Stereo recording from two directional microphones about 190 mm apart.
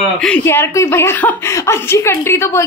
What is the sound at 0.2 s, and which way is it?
Speech, 10° left (ahead or behind).